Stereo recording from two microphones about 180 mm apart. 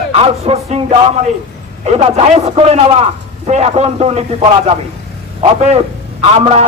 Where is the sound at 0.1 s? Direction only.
35° right (ahead or behind).